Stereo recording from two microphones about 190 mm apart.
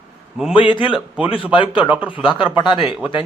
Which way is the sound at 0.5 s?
25° left (ahead or behind).